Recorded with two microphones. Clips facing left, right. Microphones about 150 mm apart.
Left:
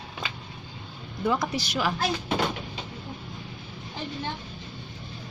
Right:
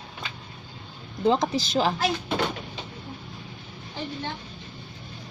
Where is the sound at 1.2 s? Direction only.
25° right (ahead or behind).